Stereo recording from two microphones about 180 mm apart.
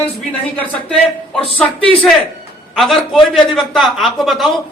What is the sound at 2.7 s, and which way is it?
A man's voice, centre (ahead or behind).